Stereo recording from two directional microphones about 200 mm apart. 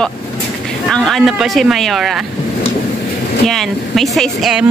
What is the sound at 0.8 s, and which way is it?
Speech, centre (ahead or behind).